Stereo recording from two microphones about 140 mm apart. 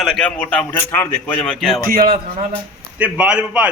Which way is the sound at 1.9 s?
90° right.